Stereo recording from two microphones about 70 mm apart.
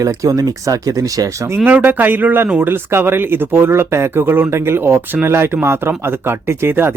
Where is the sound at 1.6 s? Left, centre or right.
Right.